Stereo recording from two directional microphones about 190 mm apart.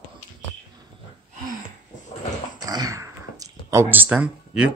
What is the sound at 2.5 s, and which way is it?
Dog, 20° right (ahead or behind).